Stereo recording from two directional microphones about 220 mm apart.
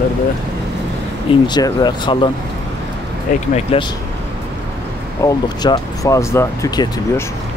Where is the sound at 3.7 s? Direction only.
25° left (ahead or behind).